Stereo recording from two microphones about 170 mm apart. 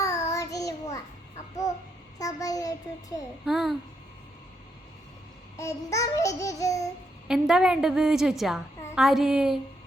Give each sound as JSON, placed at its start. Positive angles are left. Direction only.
{"t": 0.1, "sound": "child singing", "side_deg": 40}
{"t": 0.3, "sound": "child singing", "side_deg": 20}
{"t": 2.1, "sound": "child singing", "side_deg": 20}
{"t": 3.4, "sound": "a woman's voice", "side_deg": 0}
{"t": 5.5, "sound": "child singing", "side_deg": 20}
{"t": 7.3, "sound": "a woman's voice", "side_deg": -5}